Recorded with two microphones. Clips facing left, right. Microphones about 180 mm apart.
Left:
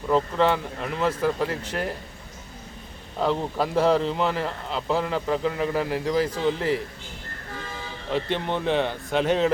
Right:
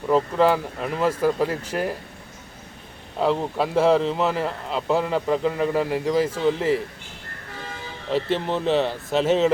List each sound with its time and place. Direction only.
0.1 s speech: 5° right (ahead or behind)
3.2 s speech: 5° right (ahead or behind)
8.1 s speech: 5° right (ahead or behind)